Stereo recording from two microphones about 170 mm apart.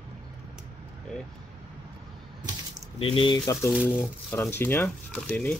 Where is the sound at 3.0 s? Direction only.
30° left (ahead or behind); by 5.6 s 10° left (ahead or behind).